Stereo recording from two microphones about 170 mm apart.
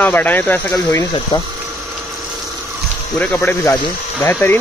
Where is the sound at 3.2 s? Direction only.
10° left (ahead or behind).